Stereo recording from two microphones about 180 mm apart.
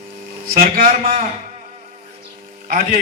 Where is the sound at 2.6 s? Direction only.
50° right (ahead or behind).